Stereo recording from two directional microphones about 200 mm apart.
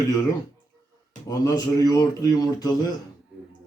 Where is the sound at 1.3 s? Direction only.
20° left (ahead or behind).